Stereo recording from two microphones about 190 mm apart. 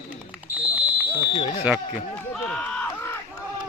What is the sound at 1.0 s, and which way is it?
Speech, 25° left (ahead or behind).